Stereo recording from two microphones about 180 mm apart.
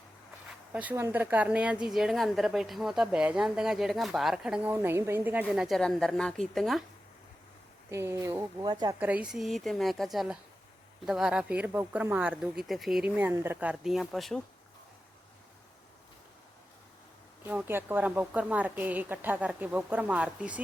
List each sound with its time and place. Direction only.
0.7 s a woman's voice: 10° right (ahead or behind)
7.9 s speech: 15° right (ahead or behind)
9.0 s a woman's voice: 10° right (ahead or behind)
17.4 s speech: 10° right (ahead or behind)